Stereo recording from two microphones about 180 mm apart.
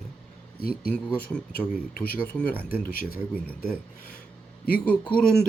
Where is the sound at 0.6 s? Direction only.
55° left (ahead or behind).